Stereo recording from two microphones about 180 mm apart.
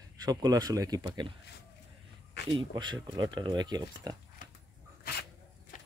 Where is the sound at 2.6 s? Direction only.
25° right (ahead or behind).